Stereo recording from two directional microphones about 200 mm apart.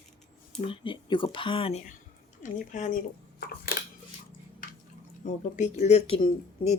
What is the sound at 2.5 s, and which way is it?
Speech, 40° left (ahead or behind).